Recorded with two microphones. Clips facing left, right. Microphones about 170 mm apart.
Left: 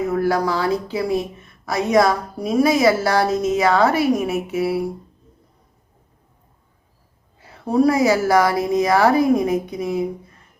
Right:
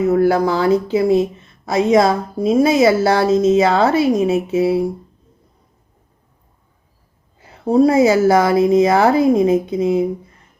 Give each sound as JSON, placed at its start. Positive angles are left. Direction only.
{"t": 0.1, "sound": "a woman's voice", "side_deg": -25}
{"t": 7.6, "sound": "a woman's voice", "side_deg": -25}